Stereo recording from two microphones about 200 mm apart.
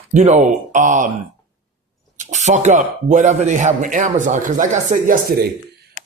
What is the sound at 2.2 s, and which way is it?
Speech, 35° right (ahead or behind).